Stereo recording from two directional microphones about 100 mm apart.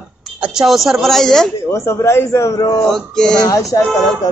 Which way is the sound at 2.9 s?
5° left (ahead or behind).